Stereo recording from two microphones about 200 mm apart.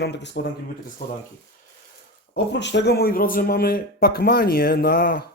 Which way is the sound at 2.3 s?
60° left (ahead or behind).